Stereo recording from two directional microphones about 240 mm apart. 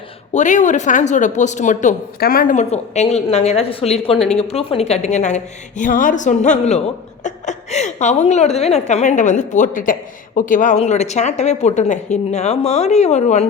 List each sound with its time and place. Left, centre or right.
0.3 s a woman's voice: left